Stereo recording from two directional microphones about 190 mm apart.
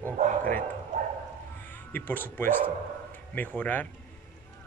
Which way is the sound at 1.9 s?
10° left (ahead or behind).